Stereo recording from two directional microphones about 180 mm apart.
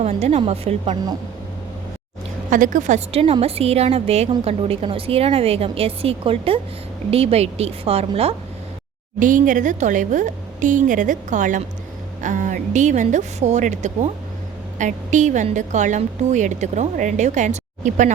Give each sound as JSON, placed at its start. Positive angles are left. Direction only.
{"t": 0.0, "sound": "a woman's voice", "side_deg": -35}
{"t": 2.5, "sound": "a woman's voice", "side_deg": -45}
{"t": 9.1, "sound": "a woman's voice", "side_deg": -45}